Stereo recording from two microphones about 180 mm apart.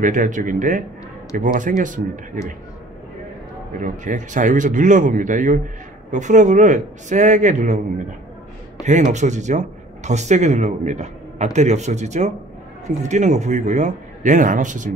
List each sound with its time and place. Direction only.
0.0 s a man's voice: 45° right (ahead or behind)
3.8 s a man's voice: 45° right (ahead or behind)
8.8 s speech: 40° right (ahead or behind)